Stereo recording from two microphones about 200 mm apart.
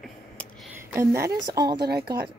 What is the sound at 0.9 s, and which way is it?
Speech, 15° right (ahead or behind).